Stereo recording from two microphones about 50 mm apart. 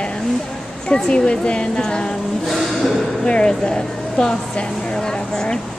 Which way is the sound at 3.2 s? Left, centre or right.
Centre.